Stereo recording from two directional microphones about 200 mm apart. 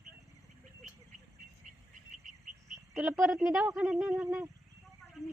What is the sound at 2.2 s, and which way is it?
Cricket, 40° right (ahead or behind).